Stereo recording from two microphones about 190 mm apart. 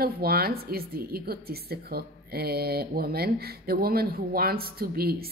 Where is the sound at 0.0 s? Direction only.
55° right (ahead or behind).